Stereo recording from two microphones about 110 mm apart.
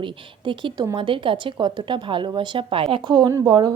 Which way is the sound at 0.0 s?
45° right (ahead or behind).